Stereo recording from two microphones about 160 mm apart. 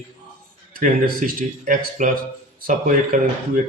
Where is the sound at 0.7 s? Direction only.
60° right (ahead or behind).